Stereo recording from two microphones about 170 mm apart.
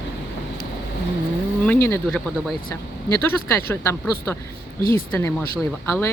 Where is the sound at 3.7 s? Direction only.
15° left (ahead or behind).